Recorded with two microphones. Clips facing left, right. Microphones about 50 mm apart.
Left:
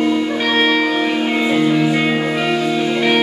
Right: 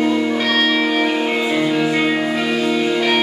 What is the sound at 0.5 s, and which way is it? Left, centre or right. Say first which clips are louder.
Music: left 3 dB; left.